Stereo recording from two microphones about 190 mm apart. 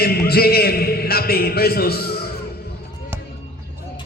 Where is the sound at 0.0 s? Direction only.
55° left (ahead or behind).